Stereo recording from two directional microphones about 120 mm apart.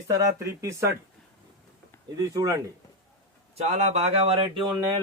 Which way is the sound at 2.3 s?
30° right (ahead or behind).